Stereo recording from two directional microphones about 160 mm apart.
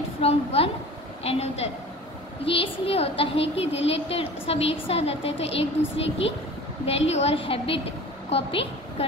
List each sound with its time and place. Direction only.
0.2 s a woman's voice: 40° left (ahead or behind)